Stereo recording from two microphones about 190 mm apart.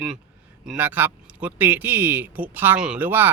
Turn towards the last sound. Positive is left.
turn(degrees=-10)  # may be behind; listen again after turning